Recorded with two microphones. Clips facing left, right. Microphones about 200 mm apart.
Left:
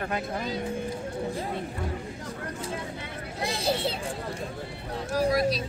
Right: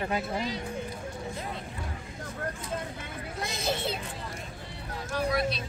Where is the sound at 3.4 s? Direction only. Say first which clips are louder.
Left 4 dB; 30° left (ahead or behind).